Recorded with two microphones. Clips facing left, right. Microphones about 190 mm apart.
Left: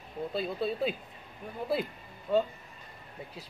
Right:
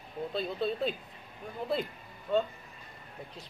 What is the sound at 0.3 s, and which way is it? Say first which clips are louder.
Speech: even; 5° left (ahead or behind).